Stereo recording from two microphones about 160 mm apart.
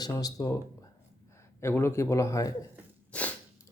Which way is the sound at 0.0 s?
25° left (ahead or behind).